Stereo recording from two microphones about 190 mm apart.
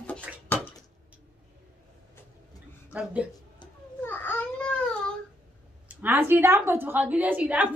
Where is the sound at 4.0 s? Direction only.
10° left (ahead or behind).